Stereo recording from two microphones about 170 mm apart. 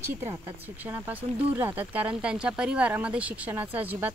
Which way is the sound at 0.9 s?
10° right (ahead or behind).